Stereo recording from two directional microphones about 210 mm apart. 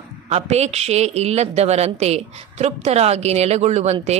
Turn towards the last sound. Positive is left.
turn(degrees=-30)  # may be behind; listen again after turning